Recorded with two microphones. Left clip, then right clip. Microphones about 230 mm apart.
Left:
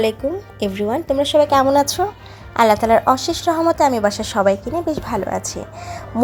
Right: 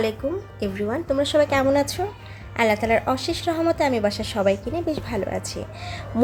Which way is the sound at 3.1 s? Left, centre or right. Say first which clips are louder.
Left 7 dB; centre.